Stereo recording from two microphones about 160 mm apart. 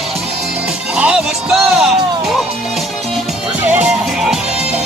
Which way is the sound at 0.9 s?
5° right (ahead or behind).